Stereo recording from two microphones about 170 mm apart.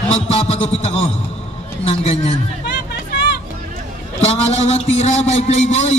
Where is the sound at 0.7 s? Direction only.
35° left (ahead or behind).